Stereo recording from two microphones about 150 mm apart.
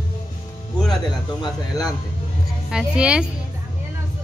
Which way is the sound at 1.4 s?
25° left (ahead or behind).